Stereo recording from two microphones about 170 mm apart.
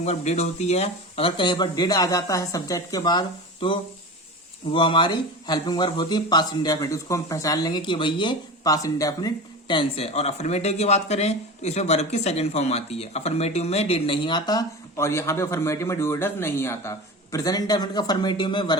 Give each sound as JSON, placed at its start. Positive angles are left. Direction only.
{"t": 0.0, "sound": "speech", "side_deg": 40}